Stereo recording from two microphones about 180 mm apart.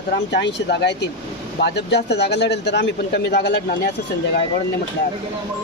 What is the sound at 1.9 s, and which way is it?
Speech, 65° left (ahead or behind).